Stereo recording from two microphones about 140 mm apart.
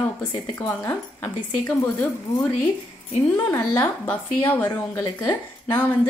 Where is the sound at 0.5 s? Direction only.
20° left (ahead or behind).